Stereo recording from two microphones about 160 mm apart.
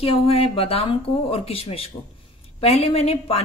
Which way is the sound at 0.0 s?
35° left (ahead or behind).